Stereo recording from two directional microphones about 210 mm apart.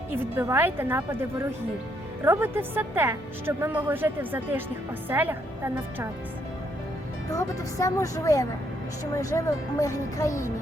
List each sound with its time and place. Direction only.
0.3 s a woman's voice: 10° right (ahead or behind)
7.3 s speech: 15° left (ahead or behind)